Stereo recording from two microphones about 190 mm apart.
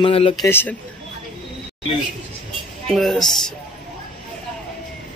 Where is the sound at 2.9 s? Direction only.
Centre (ahead or behind).